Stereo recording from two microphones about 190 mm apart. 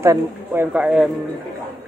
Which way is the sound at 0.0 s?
15° right (ahead or behind).